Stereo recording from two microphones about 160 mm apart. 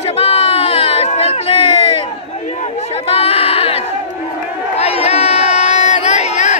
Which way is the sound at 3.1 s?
35° left (ahead or behind).